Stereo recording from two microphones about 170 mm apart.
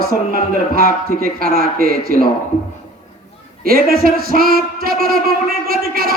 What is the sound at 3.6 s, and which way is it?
Speech, 60° right (ahead or behind).